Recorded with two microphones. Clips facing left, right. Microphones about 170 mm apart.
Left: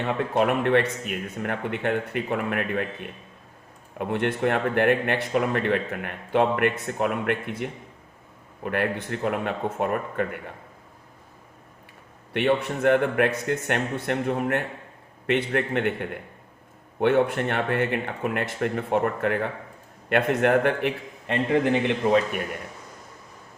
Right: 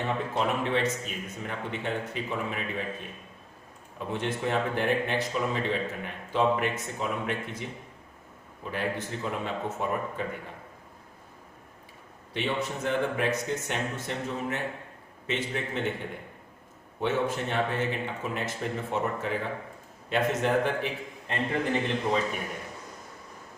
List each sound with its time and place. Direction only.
0.0 s speech: 65° left (ahead or behind)
12.3 s a man's voice: 60° left (ahead or behind)